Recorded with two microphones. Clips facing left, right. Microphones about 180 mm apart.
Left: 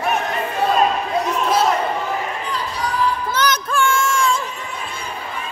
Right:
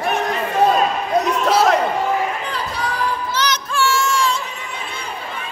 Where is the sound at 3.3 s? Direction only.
55° left (ahead or behind).